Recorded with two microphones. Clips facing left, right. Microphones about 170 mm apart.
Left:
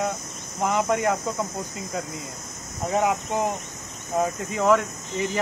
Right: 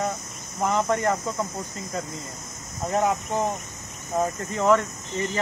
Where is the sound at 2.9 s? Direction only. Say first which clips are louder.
Even; 10° left (ahead or behind).